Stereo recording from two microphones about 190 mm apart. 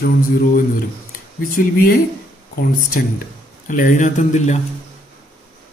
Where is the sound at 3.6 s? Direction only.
45° left (ahead or behind).